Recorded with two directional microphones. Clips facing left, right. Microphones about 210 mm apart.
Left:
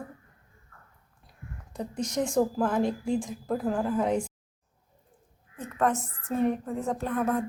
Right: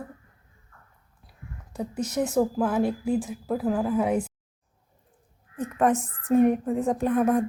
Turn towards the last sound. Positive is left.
turn(degrees=-15)  # may be behind; listen again after turning